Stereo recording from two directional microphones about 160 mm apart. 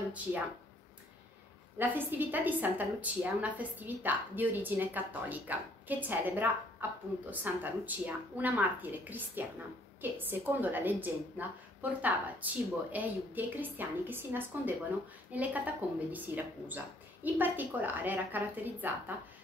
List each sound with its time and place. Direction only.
1.8 s a woman's voice: 10° right (ahead or behind)